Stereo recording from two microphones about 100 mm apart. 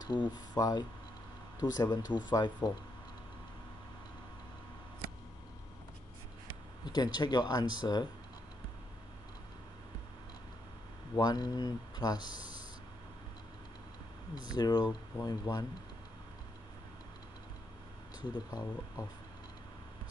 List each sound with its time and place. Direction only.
0.0 s speech: 50° left (ahead or behind)
6.8 s speech: 45° left (ahead or behind)
11.1 s speech: 40° left (ahead or behind)
14.3 s speech: 45° left (ahead or behind)
18.2 s speech: 50° left (ahead or behind)